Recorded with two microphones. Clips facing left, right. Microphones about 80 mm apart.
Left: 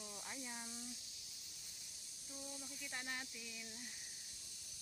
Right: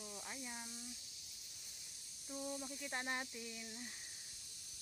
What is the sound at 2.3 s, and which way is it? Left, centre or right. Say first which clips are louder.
Speech: right 8 dB; right.